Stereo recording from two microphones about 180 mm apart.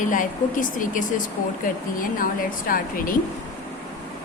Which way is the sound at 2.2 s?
50° left (ahead or behind).